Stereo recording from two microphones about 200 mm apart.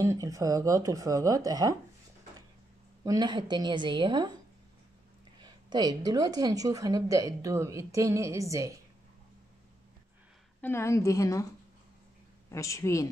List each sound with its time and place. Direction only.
0.0 s a woman's voice: 15° right (ahead or behind)
3.1 s a woman's voice: 20° right (ahead or behind)
5.4 s a woman's voice: 20° right (ahead or behind)
10.6 s a woman's voice: 10° left (ahead or behind)
12.4 s a woman's voice: 15° left (ahead or behind)